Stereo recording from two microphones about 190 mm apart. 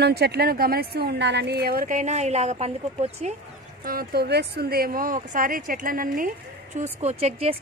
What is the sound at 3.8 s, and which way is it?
Speech, 55° right (ahead or behind).